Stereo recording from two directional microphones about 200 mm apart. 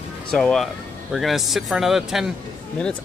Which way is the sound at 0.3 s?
Centre (ahead or behind).